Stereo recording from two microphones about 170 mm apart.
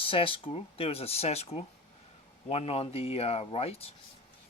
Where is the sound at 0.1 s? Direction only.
30° left (ahead or behind).